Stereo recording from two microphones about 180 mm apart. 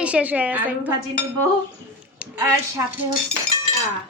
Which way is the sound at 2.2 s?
5° right (ahead or behind).